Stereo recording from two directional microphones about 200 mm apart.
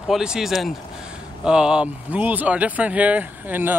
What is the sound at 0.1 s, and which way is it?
Speech, 5° right (ahead or behind).